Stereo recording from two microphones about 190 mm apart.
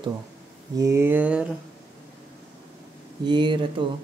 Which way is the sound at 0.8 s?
15° right (ahead or behind).